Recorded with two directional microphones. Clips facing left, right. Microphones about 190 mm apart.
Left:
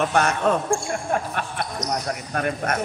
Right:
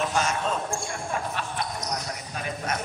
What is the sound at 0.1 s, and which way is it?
Speech, 65° left (ahead or behind).